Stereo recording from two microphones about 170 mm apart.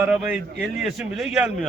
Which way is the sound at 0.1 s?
5° right (ahead or behind).